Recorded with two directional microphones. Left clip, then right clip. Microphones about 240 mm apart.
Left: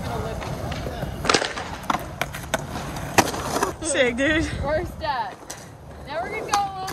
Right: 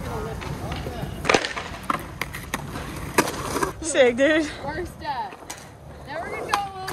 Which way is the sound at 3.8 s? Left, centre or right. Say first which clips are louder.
Right 4 dB; centre.